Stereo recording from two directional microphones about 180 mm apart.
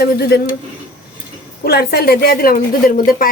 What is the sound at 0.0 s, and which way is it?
Speech, 65° left (ahead or behind).